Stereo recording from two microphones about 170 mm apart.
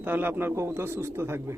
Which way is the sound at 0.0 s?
10° right (ahead or behind).